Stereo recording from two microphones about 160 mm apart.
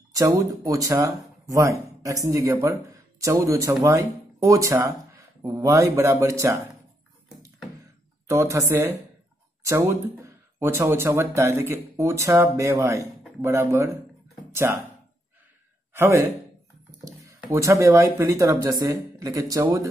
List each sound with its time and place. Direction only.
0.1 s speech: 25° right (ahead or behind)
8.3 s a woman's voice: 20° right (ahead or behind)
15.9 s a man's voice: 15° right (ahead or behind)